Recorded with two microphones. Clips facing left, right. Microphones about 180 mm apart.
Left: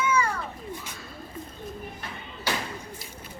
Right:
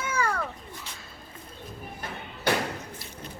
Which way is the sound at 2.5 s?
65° right (ahead or behind).